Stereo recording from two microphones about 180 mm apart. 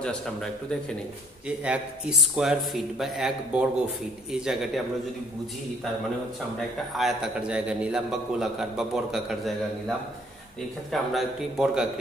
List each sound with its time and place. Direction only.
0.0 s a man's voice: 5° left (ahead or behind)
7.0 s a man's voice: centre (ahead or behind)